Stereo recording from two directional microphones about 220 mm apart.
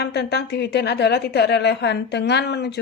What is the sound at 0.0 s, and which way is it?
A woman's voice, 50° left (ahead or behind).